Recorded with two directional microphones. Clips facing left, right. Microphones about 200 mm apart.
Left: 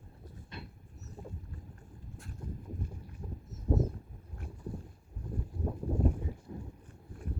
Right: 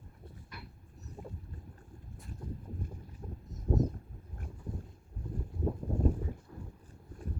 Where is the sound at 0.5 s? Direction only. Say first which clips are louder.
Left 4 dB; 25° left (ahead or behind).